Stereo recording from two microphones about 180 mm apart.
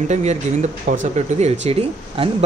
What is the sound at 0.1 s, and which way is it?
Speech, 40° right (ahead or behind).